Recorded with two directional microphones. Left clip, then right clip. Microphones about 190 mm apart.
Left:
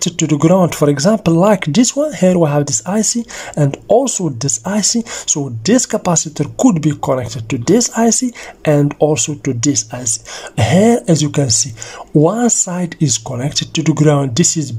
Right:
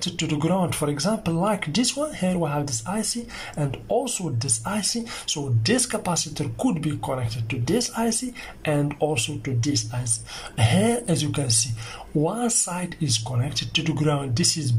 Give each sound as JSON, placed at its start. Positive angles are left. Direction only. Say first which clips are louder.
{"t": 0.0, "sound": "speech", "louder": "left 11 dB", "side_deg": 45}